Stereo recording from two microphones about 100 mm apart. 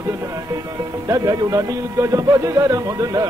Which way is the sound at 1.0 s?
35° right (ahead or behind).